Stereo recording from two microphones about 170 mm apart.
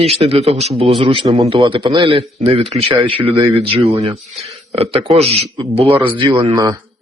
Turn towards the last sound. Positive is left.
turn(degrees=-25)  # may be behind; listen again after turning